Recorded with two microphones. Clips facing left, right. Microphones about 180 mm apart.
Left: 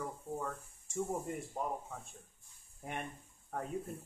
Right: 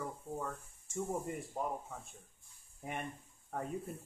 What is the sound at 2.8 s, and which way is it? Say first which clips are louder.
Speech: right 1 dB; centre (ahead or behind).